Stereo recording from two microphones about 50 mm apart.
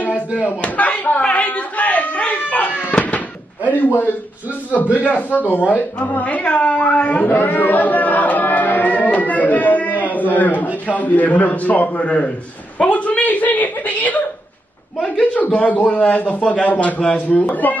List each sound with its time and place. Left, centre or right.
0.6 s a sound: left
2.8 s music: left
4.9 s speech: left
7.2 s music: left
10.9 s speech: left
15.0 s speech: left